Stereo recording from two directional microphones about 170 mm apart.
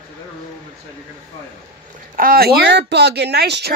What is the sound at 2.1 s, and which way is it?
Speech, 60° right (ahead or behind).